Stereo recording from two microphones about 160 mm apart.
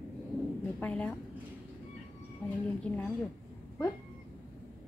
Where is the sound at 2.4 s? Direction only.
10° left (ahead or behind).